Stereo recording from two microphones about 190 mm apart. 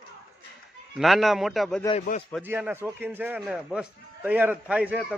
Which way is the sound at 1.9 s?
35° left (ahead or behind).